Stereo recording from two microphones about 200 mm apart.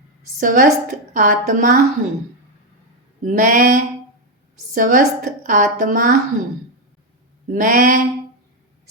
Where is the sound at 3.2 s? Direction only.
40° right (ahead or behind).